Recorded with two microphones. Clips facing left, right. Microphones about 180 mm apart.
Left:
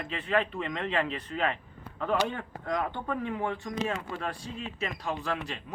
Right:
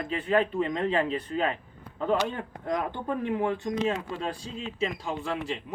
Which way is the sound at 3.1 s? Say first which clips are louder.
Right 8 dB; 30° right (ahead or behind).